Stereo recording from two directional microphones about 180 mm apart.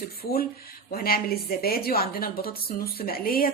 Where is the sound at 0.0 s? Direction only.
60° left (ahead or behind).